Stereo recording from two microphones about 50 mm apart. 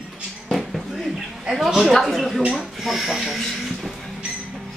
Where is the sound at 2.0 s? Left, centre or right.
Centre.